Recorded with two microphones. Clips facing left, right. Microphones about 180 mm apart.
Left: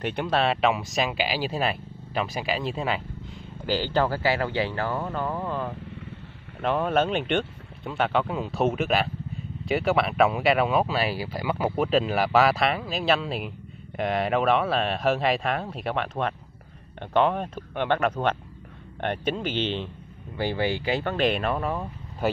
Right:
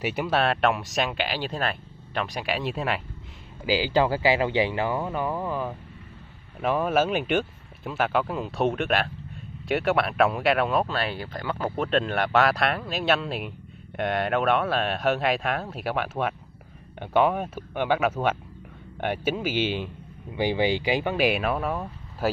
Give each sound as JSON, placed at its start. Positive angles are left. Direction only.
{"t": 0.0, "sound": "speech", "side_deg": -5}